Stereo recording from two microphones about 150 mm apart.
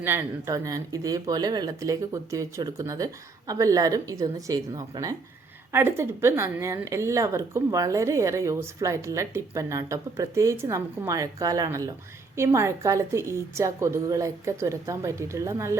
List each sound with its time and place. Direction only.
0.0 s a woman's voice: 15° right (ahead or behind)